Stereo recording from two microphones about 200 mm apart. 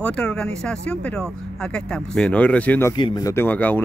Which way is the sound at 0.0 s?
5° left (ahead or behind).